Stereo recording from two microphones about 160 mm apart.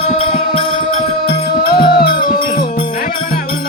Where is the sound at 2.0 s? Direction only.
70° left (ahead or behind).